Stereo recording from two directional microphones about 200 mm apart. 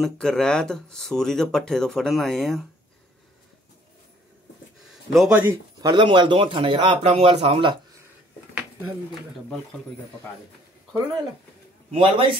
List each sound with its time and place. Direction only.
0.0 s speech: 5° left (ahead or behind)
5.1 s a man's voice: 5° right (ahead or behind); by 7.8 s 25° right (ahead or behind)
11.9 s a man's voice: 25° right (ahead or behind)